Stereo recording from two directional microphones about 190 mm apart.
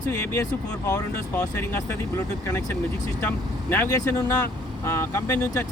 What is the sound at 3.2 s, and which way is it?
Speech, 10° left (ahead or behind).